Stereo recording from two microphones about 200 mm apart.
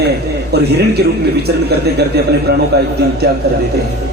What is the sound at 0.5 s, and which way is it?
Speech, 55° right (ahead or behind).